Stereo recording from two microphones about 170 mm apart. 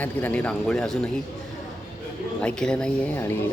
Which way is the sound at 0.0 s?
10° left (ahead or behind).